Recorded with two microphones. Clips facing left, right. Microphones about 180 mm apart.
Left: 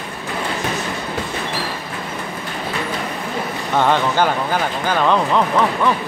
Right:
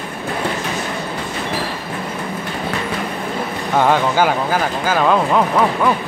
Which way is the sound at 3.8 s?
10° right (ahead or behind).